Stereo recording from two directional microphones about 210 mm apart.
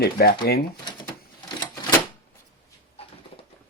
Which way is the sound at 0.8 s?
20° left (ahead or behind).